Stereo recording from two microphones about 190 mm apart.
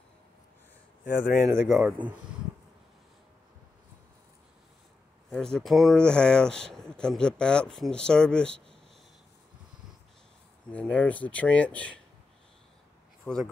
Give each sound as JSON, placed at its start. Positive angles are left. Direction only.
{"t": 1.2, "sound": "speech", "side_deg": 45}
{"t": 1.6, "sound": "speech", "side_deg": 0}
{"t": 5.3, "sound": "speech", "side_deg": 5}
{"t": 10.7, "sound": "speech", "side_deg": 5}
{"t": 13.3, "sound": "speech", "side_deg": 5}